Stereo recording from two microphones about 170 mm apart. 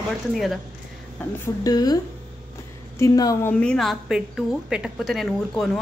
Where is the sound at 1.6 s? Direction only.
20° left (ahead or behind).